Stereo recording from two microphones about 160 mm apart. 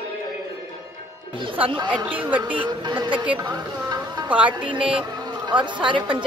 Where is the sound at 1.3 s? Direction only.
30° right (ahead or behind).